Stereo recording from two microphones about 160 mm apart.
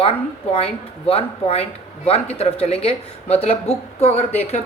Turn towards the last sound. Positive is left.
turn(degrees=40)  # may be behind; listen again after turning